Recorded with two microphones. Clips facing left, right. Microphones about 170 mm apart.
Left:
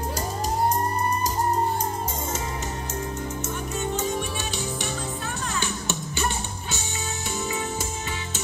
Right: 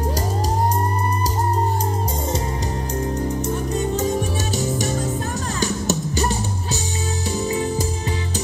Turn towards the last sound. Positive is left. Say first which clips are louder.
# right 7 dB
turn(degrees=-35)  # may be behind; listen again after turning